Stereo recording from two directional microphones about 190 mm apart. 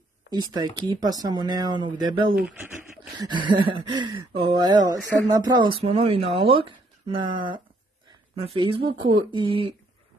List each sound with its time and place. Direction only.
0.3 s speech: 20° right (ahead or behind)
2.3 s speech: 5° right (ahead or behind)
3.2 s speech: 25° right (ahead or behind)